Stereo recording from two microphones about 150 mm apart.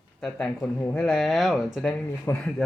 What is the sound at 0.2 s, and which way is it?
Speech, 5° left (ahead or behind).